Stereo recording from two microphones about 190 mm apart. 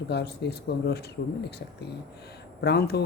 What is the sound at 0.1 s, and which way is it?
Speech, 60° left (ahead or behind).